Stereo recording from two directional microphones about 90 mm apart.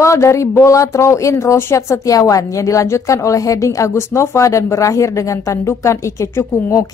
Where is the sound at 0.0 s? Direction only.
35° left (ahead or behind).